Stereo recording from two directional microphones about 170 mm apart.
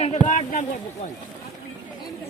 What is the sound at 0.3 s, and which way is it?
Speech, 50° left (ahead or behind).